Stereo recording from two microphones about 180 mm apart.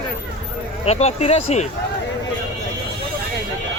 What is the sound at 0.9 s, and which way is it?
Speech, 35° left (ahead or behind).